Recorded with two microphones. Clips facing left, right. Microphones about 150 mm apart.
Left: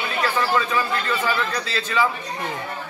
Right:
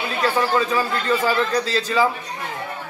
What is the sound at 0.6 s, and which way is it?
A man's voice, 35° right (ahead or behind).